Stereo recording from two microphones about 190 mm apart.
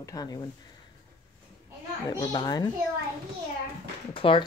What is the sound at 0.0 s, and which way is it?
Speech, 20° left (ahead or behind).